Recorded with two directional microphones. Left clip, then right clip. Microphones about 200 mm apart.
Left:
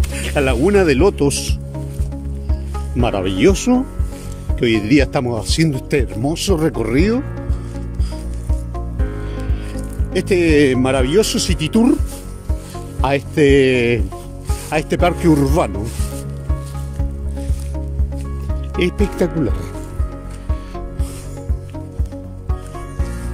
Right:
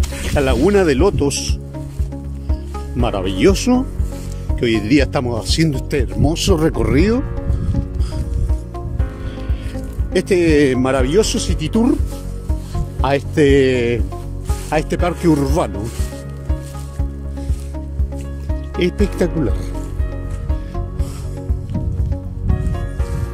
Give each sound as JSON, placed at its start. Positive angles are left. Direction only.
{"t": 0.1, "sound": "speech", "side_deg": 5}
{"t": 3.0, "sound": "speech", "side_deg": 15}
{"t": 10.1, "sound": "speech", "side_deg": 15}
{"t": 13.0, "sound": "speech", "side_deg": 15}
{"t": 18.8, "sound": "speech", "side_deg": 15}